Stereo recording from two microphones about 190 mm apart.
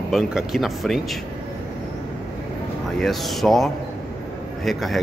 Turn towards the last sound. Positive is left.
turn(degrees=0)  # may be behind; listen again after turning